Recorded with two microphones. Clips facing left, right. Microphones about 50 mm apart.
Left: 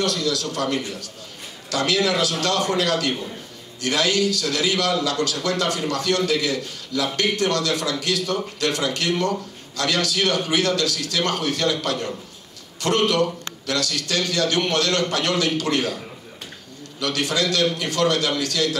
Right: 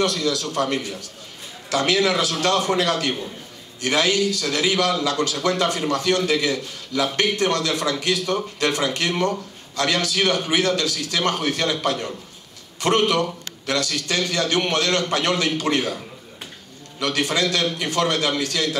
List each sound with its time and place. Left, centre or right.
0.0 s a man's voice: right
17.0 s a man's voice: right